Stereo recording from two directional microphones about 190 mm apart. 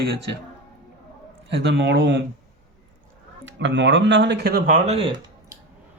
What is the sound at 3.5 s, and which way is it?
Speech, 70° right (ahead or behind).